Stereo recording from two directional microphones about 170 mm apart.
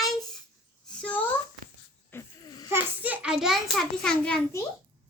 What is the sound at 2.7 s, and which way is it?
A child's voice, 10° right (ahead or behind).